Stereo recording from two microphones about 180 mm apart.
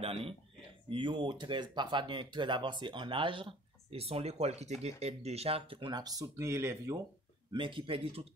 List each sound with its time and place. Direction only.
0.0 s speech: 30° right (ahead or behind); by 7.0 s 15° right (ahead or behind)
7.5 s speech: 30° right (ahead or behind)